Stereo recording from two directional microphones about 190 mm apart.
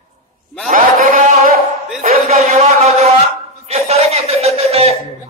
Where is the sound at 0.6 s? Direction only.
45° right (ahead or behind).